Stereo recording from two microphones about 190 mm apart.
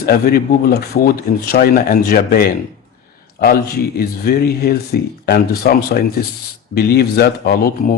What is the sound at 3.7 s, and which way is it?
Speech, 55° left (ahead or behind).